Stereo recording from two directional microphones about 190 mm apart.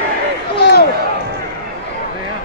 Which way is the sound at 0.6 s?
60° left (ahead or behind).